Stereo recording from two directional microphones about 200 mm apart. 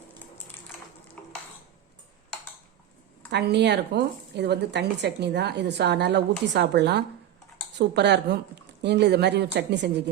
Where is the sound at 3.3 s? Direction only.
60° right (ahead or behind).